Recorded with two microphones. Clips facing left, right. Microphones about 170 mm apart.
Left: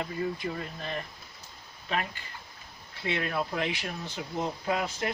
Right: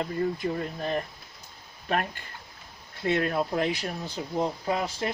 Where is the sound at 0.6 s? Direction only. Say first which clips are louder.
Right 6 dB; 40° right (ahead or behind).